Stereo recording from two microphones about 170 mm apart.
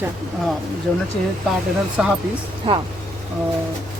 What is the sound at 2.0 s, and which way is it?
Speech, 5° right (ahead or behind).